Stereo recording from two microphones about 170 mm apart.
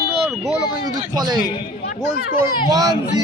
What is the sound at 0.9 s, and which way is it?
Speech, 25° right (ahead or behind).